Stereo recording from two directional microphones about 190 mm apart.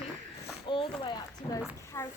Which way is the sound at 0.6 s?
25° left (ahead or behind).